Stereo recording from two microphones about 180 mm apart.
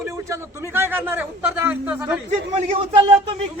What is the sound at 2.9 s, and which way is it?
Speech, 30° right (ahead or behind).